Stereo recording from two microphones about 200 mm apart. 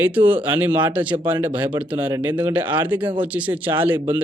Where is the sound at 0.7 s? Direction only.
25° right (ahead or behind).